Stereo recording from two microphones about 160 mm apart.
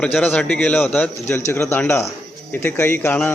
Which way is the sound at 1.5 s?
15° left (ahead or behind).